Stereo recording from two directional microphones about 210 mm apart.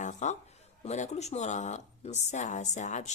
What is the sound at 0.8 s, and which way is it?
Speech, 30° left (ahead or behind).